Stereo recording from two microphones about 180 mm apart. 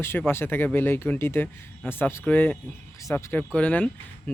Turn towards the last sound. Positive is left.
turn(degrees=10)  # may be behind; listen again after turning